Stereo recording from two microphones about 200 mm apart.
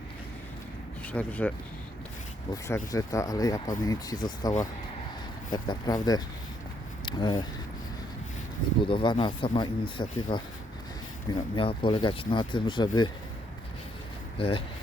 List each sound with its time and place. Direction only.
1.0 s speech: 10° left (ahead or behind)
2.6 s speech: 15° left (ahead or behind)
8.8 s speech: 25° left (ahead or behind)
11.5 s speech: 25° left (ahead or behind)
14.3 s speech: 25° left (ahead or behind)